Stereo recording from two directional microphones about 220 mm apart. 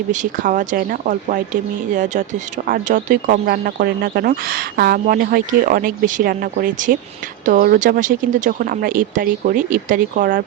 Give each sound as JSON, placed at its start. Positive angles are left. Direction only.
{"t": 0.1, "sound": "speech", "side_deg": -35}